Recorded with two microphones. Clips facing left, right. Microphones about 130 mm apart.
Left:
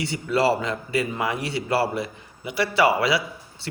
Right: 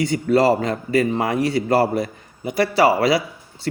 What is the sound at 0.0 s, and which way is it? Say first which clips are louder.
A man's voice: right 5 dB; 45° right (ahead or behind).